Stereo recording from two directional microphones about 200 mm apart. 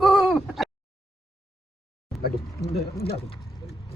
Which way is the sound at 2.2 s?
50° left (ahead or behind).